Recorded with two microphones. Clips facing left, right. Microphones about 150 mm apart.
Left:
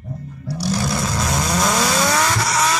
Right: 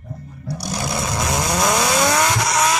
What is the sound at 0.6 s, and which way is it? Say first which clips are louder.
Vehicle: left 3 dB; 20° right (ahead or behind).